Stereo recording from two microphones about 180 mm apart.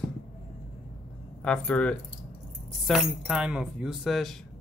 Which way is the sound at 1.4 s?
5° left (ahead or behind).